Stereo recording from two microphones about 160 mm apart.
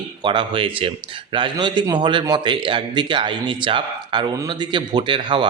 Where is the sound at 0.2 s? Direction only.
30° right (ahead or behind).